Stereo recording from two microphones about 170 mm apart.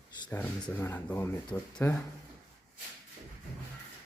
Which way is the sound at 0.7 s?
10° left (ahead or behind).